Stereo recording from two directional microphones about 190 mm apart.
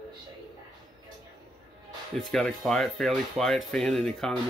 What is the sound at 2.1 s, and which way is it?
Speech, centre (ahead or behind).